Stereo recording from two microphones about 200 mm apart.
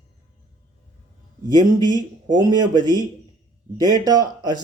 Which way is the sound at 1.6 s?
20° right (ahead or behind).